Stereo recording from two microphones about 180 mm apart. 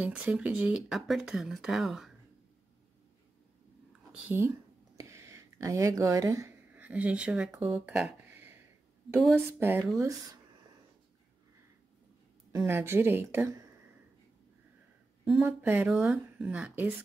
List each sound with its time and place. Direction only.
0.0 s speech: 5° right (ahead or behind)
4.1 s speech: 10° right (ahead or behind)
7.7 s a sound: 5° right (ahead or behind)
9.1 s speech: 15° right (ahead or behind)
12.5 s speech: 15° right (ahead or behind)
15.4 s speech: 10° right (ahead or behind)